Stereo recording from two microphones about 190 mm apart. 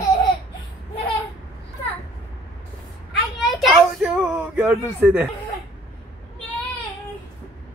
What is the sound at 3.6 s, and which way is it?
Child singing, centre (ahead or behind).